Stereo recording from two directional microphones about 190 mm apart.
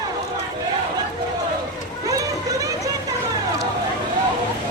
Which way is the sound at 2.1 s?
20° right (ahead or behind).